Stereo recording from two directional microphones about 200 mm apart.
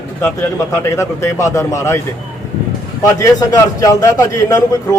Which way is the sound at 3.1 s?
15° left (ahead or behind).